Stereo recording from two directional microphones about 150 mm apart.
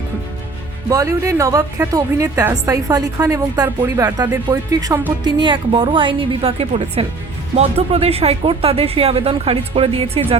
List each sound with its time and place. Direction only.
0.9 s a woman's voice: 20° right (ahead or behind); by 10.3 s 40° right (ahead or behind)